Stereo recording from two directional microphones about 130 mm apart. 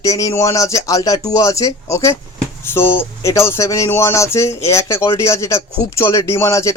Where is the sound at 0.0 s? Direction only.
25° left (ahead or behind).